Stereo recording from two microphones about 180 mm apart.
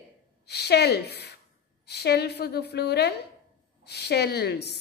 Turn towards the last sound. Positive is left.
turn(degrees=65)  # may be behind; listen again after turning